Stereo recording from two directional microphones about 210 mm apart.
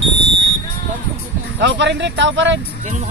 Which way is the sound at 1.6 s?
55° right (ahead or behind).